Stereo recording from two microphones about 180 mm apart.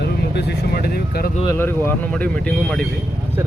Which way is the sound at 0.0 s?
70° left (ahead or behind).